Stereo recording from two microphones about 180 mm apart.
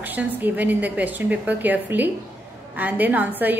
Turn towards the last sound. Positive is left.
turn(degrees=-10)  # may be behind; listen again after turning